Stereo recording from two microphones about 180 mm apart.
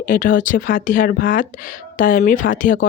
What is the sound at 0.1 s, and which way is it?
Speech, 50° left (ahead or behind).